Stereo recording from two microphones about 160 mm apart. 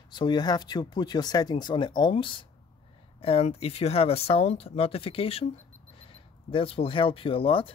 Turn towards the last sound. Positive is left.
turn(degrees=35)  # may be behind; listen again after turning